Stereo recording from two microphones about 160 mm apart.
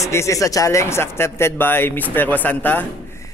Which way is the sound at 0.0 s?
20° left (ahead or behind).